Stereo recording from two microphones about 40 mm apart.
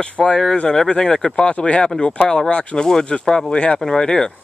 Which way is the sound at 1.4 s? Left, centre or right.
Left.